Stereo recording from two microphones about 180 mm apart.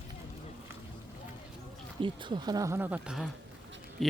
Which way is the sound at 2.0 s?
25° right (ahead or behind).